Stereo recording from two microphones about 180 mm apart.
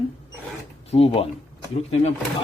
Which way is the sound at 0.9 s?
35° left (ahead or behind).